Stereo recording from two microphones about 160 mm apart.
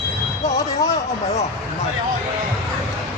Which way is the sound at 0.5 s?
20° left (ahead or behind).